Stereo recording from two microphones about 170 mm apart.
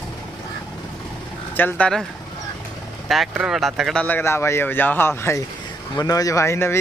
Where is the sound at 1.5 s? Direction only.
10° left (ahead or behind).